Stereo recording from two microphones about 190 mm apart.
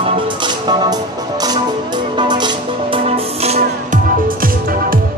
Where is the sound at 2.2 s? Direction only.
25° right (ahead or behind).